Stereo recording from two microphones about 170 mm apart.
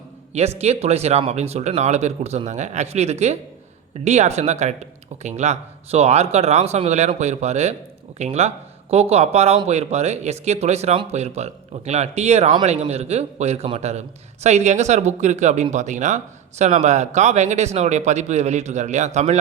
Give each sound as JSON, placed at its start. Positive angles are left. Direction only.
{"t": 0.6, "sound": "speech", "side_deg": -40}